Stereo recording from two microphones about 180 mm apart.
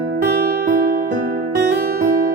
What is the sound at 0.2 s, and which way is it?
Music, 55° right (ahead or behind).